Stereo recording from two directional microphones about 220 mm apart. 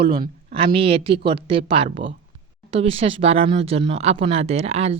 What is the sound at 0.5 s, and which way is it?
Speech, 25° right (ahead or behind).